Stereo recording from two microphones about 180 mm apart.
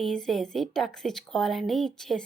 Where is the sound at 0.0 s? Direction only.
Centre (ahead or behind).